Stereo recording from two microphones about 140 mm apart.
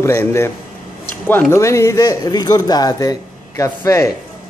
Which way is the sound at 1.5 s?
20° left (ahead or behind).